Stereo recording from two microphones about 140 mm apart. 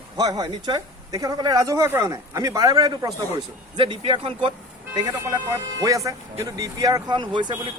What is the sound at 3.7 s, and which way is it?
Speech, 40° right (ahead or behind).